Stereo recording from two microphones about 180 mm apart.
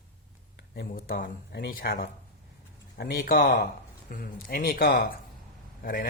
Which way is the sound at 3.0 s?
55° left (ahead or behind).